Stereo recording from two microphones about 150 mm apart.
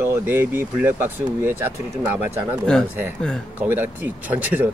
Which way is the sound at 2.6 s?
5° left (ahead or behind).